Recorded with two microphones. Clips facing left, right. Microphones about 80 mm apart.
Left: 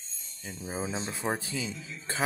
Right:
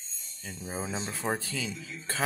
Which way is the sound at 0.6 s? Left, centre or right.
Centre.